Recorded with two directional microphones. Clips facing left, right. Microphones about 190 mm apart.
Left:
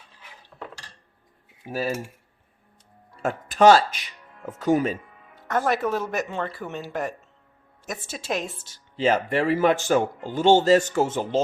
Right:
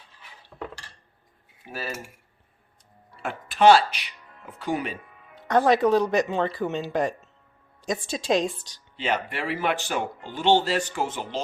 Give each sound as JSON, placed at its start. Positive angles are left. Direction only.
{"t": 3.2, "sound": "speech", "side_deg": 40}
{"t": 5.3, "sound": "speech", "side_deg": -20}
{"t": 9.0, "sound": "speech", "side_deg": 40}